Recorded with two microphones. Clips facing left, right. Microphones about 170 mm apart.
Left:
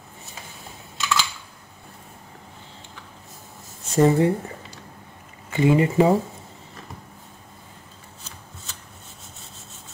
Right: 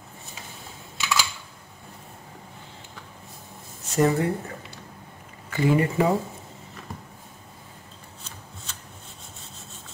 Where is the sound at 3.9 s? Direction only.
25° left (ahead or behind).